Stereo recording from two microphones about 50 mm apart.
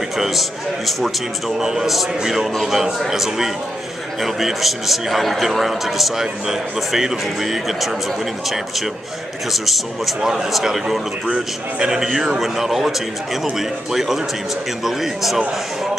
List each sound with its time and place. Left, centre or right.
0.2 s a man's voice: centre
9.5 s a man's voice: centre
11.2 s a man's voice: right
11.9 s a man's voice: centre